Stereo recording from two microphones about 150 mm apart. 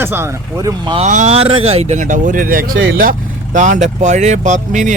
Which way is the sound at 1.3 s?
40° right (ahead or behind).